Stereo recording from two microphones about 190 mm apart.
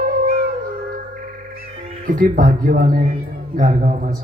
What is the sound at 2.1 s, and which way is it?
A man's voice, 45° right (ahead or behind).